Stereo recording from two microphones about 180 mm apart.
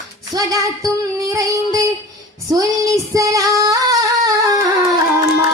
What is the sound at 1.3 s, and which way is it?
Child singing, 20° right (ahead or behind).